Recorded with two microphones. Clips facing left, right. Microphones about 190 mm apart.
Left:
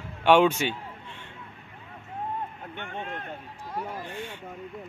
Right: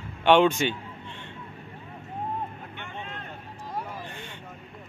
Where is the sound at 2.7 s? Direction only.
50° left (ahead or behind).